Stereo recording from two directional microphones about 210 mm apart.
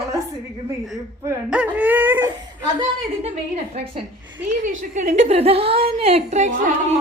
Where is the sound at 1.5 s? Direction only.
5° right (ahead or behind).